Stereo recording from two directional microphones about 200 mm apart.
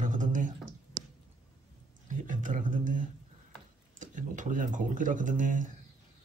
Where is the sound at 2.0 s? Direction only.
40° right (ahead or behind).